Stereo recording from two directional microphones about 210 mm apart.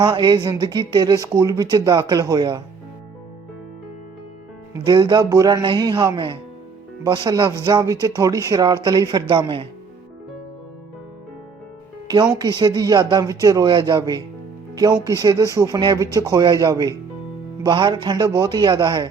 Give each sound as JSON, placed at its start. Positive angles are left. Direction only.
{"t": 0.0, "sound": "speech", "side_deg": -20}
{"t": 4.9, "sound": "speech", "side_deg": -20}
{"t": 12.0, "sound": "speech", "side_deg": -20}